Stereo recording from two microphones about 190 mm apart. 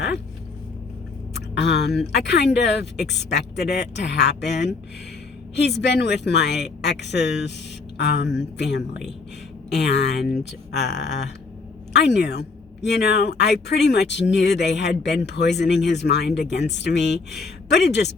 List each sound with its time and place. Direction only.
1.4 s speech: 60° left (ahead or behind)
11.9 s speech: 65° left (ahead or behind)